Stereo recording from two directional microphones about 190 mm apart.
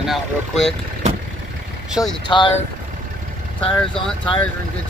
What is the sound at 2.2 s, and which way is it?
Speech, 25° left (ahead or behind).